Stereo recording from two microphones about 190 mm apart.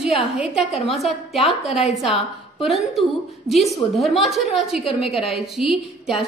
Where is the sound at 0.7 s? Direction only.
30° left (ahead or behind).